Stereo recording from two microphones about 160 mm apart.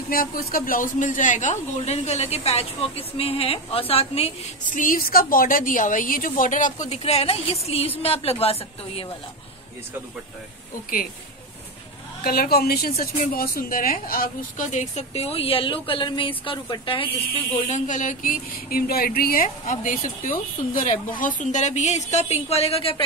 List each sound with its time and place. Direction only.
0.1 s a woman's voice: 65° left (ahead or behind); by 4.3 s 40° left (ahead or behind)
4.7 s a woman's voice: 60° left (ahead or behind); by 9.1 s 35° left (ahead or behind)
12.2 s a woman's voice: 70° left (ahead or behind); by 17.1 s 35° left (ahead or behind)
17.6 s a woman's voice: 50° left (ahead or behind)